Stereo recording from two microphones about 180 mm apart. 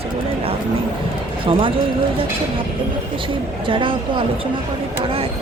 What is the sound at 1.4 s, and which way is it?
Speech, 30° right (ahead or behind).